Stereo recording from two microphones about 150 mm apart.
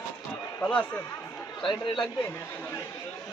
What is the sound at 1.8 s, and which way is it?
Speech, 30° left (ahead or behind).